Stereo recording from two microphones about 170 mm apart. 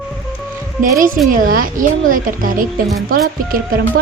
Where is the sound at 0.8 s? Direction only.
55° right (ahead or behind).